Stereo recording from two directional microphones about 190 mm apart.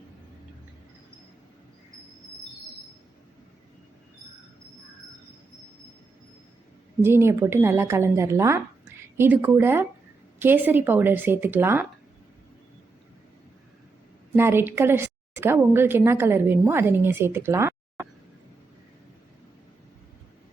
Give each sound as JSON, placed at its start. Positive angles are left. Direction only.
{"t": 7.0, "sound": "a woman's voice", "side_deg": -15}
{"t": 14.3, "sound": "a woman's voice", "side_deg": -10}